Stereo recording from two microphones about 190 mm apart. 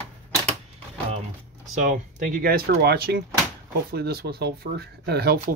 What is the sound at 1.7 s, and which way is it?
Speech, 40° right (ahead or behind).